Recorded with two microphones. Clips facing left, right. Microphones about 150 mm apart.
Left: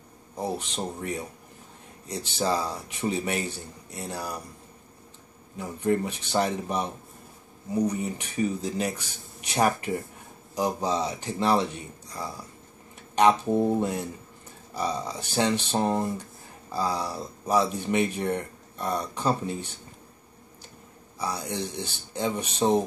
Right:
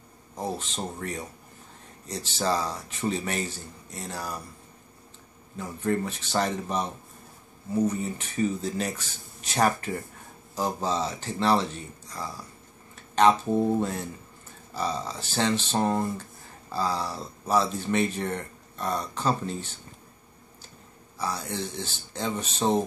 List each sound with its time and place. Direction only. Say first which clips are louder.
0.4 s speech: left 1 dB; 15° left (ahead or behind)
5.6 s speech: left 2 dB; 15° left (ahead or behind)
21.2 s speech: left 1 dB; 15° left (ahead or behind)